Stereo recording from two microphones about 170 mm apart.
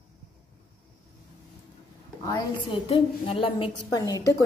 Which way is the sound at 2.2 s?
20° left (ahead or behind).